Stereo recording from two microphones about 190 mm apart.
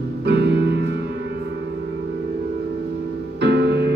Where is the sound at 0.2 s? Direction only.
65° right (ahead or behind).